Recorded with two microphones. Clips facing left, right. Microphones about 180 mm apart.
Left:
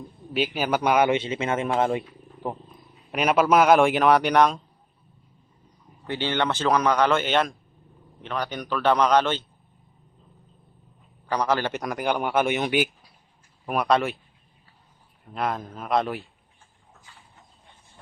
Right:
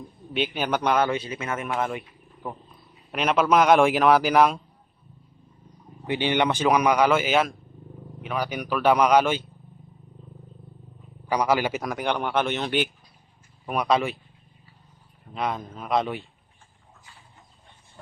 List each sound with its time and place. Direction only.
0.3 s speech: 5° left (ahead or behind); by 2.6 s 30° left (ahead or behind)
3.1 s a man's voice: 5° left (ahead or behind)
6.1 s speech: 15° right (ahead or behind)
11.3 s a man's voice: 10° right (ahead or behind)
15.3 s a man's voice: centre (ahead or behind)